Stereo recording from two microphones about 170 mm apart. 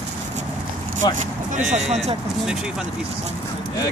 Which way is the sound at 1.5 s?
45° right (ahead or behind).